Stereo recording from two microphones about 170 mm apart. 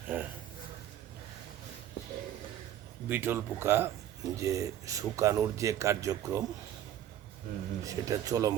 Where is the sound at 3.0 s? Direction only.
10° right (ahead or behind).